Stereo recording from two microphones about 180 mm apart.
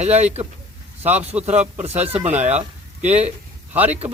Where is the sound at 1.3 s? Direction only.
10° right (ahead or behind).